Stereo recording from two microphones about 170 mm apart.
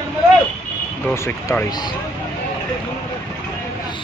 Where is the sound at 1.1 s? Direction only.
15° left (ahead or behind).